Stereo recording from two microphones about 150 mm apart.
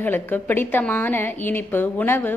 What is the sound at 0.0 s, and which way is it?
A woman's voice, 15° left (ahead or behind).